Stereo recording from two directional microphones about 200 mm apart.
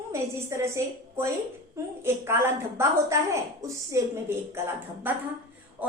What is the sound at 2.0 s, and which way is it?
A woman's voice, 10° right (ahead or behind).